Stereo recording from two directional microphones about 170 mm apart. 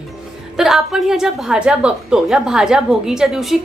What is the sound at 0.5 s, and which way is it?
A woman's voice, centre (ahead or behind).